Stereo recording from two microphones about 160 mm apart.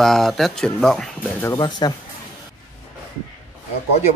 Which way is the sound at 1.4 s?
25° left (ahead or behind).